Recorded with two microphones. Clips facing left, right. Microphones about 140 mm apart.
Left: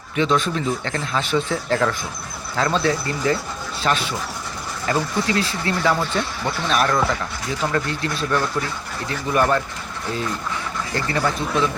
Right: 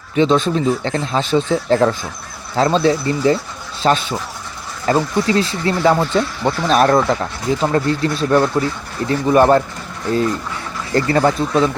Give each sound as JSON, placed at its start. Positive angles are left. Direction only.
{"t": 0.2, "sound": "speech", "side_deg": -25}
{"t": 10.9, "sound": "speech", "side_deg": -40}